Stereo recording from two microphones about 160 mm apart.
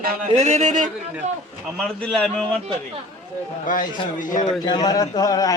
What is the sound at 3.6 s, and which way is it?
Speech, 55° left (ahead or behind).